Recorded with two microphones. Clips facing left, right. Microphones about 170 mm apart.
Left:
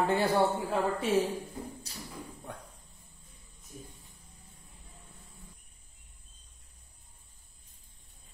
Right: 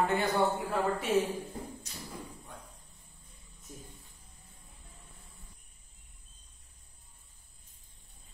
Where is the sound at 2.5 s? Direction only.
65° left (ahead or behind).